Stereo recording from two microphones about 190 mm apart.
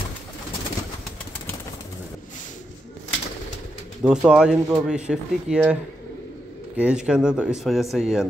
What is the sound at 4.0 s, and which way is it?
Speech, 5° right (ahead or behind).